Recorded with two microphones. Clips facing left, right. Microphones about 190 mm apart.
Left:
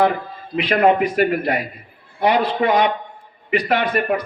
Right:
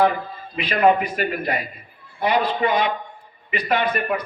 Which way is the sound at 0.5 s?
55° left (ahead or behind).